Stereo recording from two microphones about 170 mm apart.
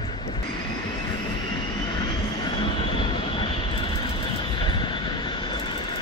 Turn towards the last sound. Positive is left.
turn(degrees=30)  # may be behind; listen again after turning